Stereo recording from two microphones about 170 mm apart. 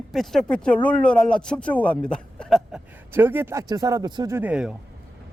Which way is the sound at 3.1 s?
15° right (ahead or behind).